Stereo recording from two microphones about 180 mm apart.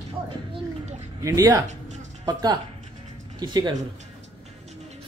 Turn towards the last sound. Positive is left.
turn(degrees=-25)  # may be behind; listen again after turning